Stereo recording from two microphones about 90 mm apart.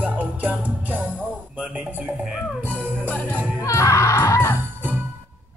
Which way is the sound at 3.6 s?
35° left (ahead or behind).